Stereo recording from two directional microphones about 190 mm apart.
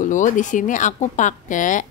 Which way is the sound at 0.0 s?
40° left (ahead or behind).